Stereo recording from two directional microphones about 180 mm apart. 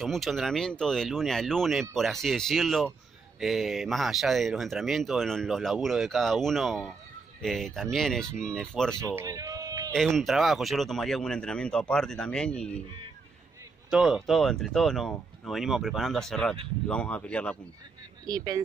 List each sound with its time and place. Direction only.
0.0 s speech: centre (ahead or behind)
9.0 s a sound: 15° right (ahead or behind)
9.9 s speech: centre (ahead or behind)
13.8 s speech: 5° right (ahead or behind)
18.2 s speech: 20° right (ahead or behind)